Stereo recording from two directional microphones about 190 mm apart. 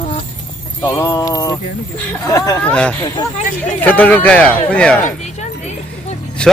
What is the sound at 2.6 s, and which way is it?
Speech, 5° left (ahead or behind).